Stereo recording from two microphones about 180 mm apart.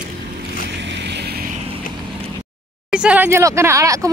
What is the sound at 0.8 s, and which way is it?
Vehicle, 75° right (ahead or behind).